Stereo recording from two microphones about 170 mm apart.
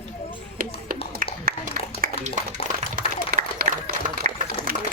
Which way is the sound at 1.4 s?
55° right (ahead or behind).